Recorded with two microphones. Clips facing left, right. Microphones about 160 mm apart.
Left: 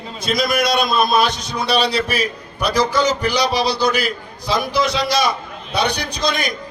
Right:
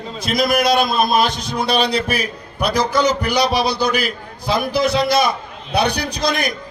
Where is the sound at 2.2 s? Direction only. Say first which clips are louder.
Even; 55° right (ahead or behind).